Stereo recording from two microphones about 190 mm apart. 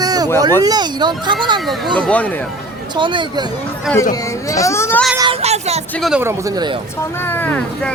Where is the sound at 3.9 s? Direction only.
15° left (ahead or behind).